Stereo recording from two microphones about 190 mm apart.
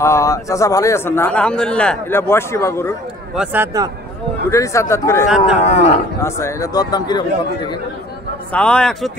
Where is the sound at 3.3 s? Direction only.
5° right (ahead or behind).